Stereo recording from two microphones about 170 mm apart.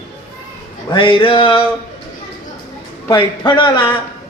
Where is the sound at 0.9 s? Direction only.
30° left (ahead or behind).